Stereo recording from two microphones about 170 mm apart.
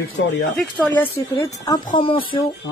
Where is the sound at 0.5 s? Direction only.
10° left (ahead or behind).